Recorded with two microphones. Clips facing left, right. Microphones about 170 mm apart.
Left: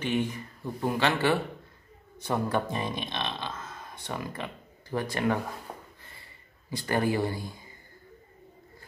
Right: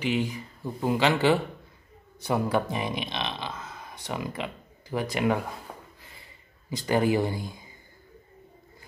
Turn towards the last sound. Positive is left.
turn(degrees=-15)  # may be behind; listen again after turning